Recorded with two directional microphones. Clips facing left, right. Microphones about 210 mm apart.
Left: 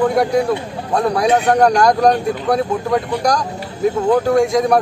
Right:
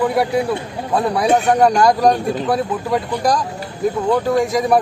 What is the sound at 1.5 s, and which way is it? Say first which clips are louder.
A man's voice: left 1 dB; centre (ahead or behind).